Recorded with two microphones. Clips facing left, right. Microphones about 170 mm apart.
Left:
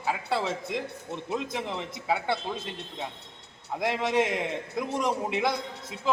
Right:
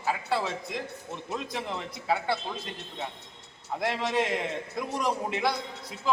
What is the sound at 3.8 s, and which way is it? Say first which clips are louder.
A man's voice: left 2 dB; 15° left (ahead or behind).